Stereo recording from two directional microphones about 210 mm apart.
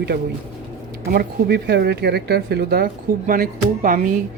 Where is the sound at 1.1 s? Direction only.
50° right (ahead or behind).